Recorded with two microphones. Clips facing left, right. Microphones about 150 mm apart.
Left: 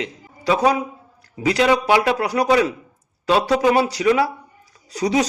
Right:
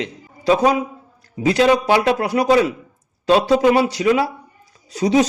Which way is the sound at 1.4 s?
25° right (ahead or behind).